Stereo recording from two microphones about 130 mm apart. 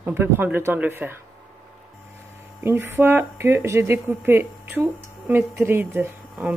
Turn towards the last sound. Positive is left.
turn(degrees=-15)  # may be behind; listen again after turning